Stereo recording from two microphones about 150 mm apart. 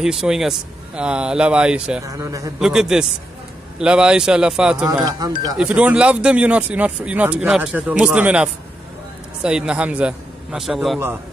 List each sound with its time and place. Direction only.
0.0 s speech: 5° right (ahead or behind)
2.0 s speech: 20° right (ahead or behind)
2.6 s speech: 5° right (ahead or behind)
5.0 s speech: 25° right (ahead or behind)
5.6 s speech: 10° right (ahead or behind)